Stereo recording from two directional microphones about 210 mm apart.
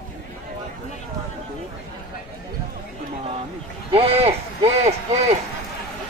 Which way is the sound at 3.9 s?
30° right (ahead or behind).